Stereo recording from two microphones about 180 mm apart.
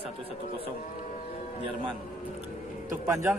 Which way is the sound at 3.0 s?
15° right (ahead or behind).